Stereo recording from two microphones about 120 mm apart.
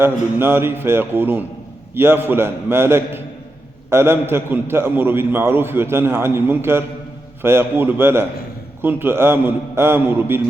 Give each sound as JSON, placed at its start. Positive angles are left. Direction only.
{"t": 0.0, "sound": "a man's voice", "side_deg": -20}